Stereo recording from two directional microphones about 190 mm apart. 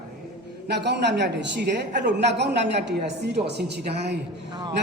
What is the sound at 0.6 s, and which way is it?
A woman's voice, 65° right (ahead or behind).